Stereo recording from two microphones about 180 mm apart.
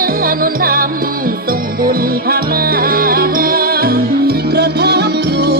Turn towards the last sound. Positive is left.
turn(degrees=-65)  # may be behind; listen again after turning